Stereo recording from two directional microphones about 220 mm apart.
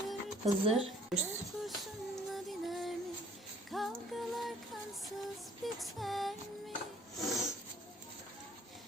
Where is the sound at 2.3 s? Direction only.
Centre (ahead or behind).